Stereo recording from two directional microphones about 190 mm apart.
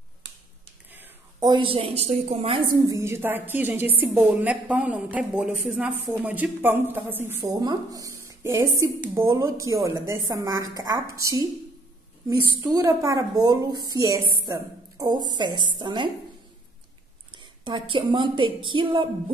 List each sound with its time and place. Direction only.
1.4 s a woman's voice: 25° right (ahead or behind)
2.9 s a woman's voice: 15° right (ahead or behind)
17.4 s a woman's voice: 25° right (ahead or behind)